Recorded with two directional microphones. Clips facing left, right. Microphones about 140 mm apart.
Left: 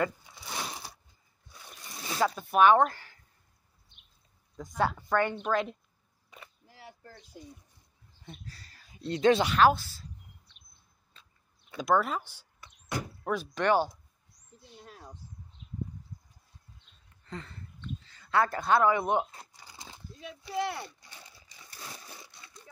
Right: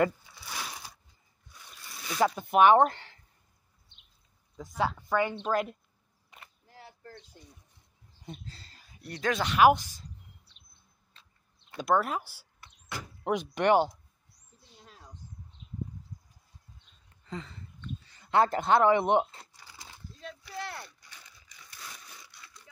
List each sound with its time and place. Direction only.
0.3 s a sound: 25° left (ahead or behind)
1.8 s zipper: 20° left (ahead or behind)
2.1 s speech: 20° right (ahead or behind)
2.8 s a sound: 25° right (ahead or behind)
4.6 s a woman's voice: 5° right (ahead or behind)
8.3 s speech: 25° right (ahead or behind)
9.0 s speech: 25° left (ahead or behind)
9.6 s speech: 15° right (ahead or behind)
11.7 s a woman's voice: centre (ahead or behind)
13.2 s speech: 20° right (ahead or behind)
17.3 s a sound: centre (ahead or behind)
18.0 s speech: 20° right (ahead or behind)
19.8 s a sound: 15° left (ahead or behind)